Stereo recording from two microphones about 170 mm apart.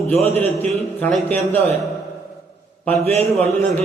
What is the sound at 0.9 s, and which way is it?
Speech, 10° left (ahead or behind).